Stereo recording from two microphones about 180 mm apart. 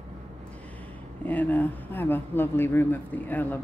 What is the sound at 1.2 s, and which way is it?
Speech, 10° left (ahead or behind).